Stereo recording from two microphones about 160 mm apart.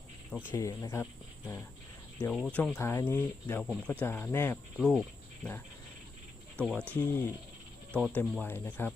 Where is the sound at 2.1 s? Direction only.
10° left (ahead or behind).